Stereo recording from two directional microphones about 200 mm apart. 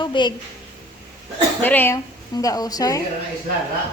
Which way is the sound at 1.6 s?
10° left (ahead or behind).